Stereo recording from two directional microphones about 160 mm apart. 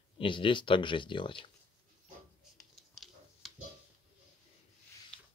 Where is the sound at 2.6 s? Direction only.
Centre (ahead or behind).